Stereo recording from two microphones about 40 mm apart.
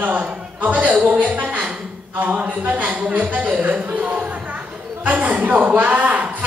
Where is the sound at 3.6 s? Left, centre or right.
Right.